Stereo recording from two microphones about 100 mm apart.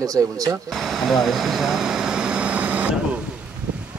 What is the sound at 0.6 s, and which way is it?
Air conditioning, centre (ahead or behind).